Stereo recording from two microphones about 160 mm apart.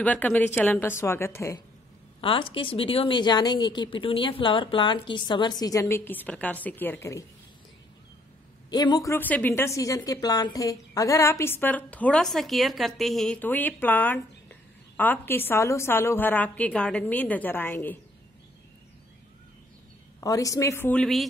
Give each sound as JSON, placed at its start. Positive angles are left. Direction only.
{"t": 0.0, "sound": "a woman's voice", "side_deg": 10}
{"t": 2.2, "sound": "speech", "side_deg": 35}
{"t": 8.6, "sound": "a woman's voice", "side_deg": 25}
{"t": 20.2, "sound": "speech", "side_deg": 20}
{"t": 21.0, "sound": "speech", "side_deg": 0}